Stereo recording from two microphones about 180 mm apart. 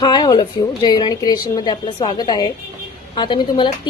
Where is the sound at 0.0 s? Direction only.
25° left (ahead or behind).